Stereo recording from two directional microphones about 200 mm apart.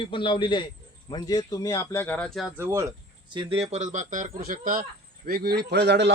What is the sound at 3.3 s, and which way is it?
Speech, 30° right (ahead or behind).